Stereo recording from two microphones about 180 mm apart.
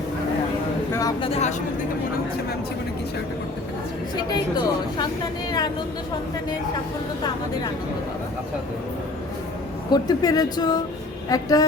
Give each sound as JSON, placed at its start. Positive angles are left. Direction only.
{"t": 0.9, "sound": "a sound", "side_deg": 20}
{"t": 1.3, "sound": "speech", "side_deg": 40}
{"t": 4.3, "sound": "a woman's voice", "side_deg": 25}
{"t": 9.9, "sound": "a woman's voice", "side_deg": 20}